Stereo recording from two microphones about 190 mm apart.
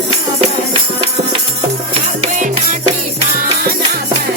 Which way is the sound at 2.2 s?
35° right (ahead or behind).